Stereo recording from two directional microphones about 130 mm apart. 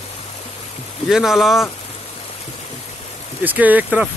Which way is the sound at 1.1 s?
5° right (ahead or behind).